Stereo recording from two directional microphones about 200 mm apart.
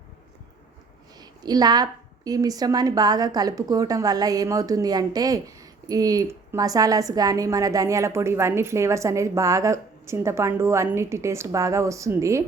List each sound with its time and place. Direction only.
1.2 s a woman's voice: 20° right (ahead or behind)